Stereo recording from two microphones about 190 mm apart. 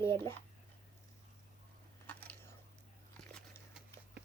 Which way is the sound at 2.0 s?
10° left (ahead or behind).